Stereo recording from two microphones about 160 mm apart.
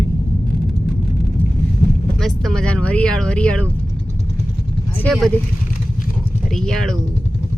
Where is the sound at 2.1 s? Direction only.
Centre (ahead or behind).